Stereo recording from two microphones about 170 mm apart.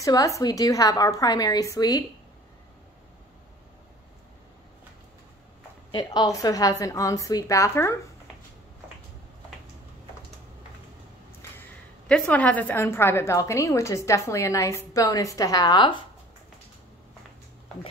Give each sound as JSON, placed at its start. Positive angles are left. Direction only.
{"t": 0.0, "sound": "a woman's voice", "side_deg": 20}
{"t": 5.9, "sound": "a woman's voice", "side_deg": 25}
{"t": 12.1, "sound": "a woman's voice", "side_deg": 10}